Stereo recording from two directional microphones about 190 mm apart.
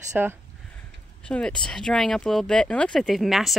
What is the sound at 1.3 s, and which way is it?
Speech, 5° left (ahead or behind).